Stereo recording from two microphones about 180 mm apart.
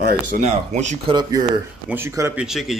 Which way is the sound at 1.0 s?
25° right (ahead or behind).